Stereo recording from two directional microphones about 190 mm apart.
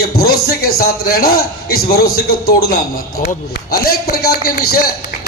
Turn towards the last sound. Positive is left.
turn(degrees=55)  # may be behind; listen again after turning